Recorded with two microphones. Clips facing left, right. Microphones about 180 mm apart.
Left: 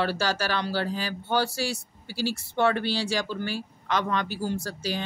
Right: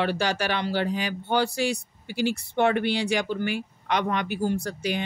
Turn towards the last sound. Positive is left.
turn(degrees=-15)  # may be behind; listen again after turning